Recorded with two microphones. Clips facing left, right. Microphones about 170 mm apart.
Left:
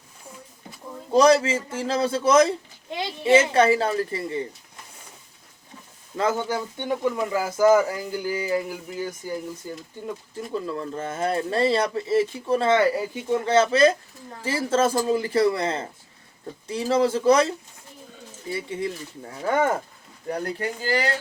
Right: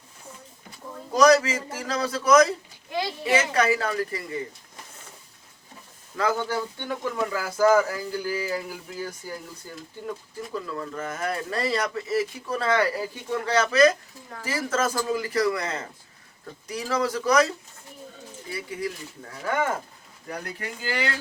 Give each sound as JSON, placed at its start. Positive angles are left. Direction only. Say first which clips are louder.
{"t": 1.1, "sound": "speech", "louder": "left 1 dB", "side_deg": 30}
{"t": 6.1, "sound": "speech", "louder": "left 1 dB", "side_deg": 20}